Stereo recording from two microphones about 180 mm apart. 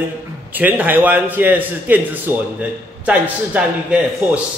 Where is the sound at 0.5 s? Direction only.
10° right (ahead or behind).